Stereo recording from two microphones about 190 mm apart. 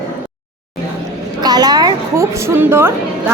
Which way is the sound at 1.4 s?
20° right (ahead or behind).